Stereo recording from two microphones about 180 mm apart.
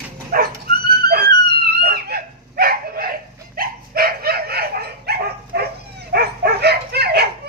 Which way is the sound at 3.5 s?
55° right (ahead or behind).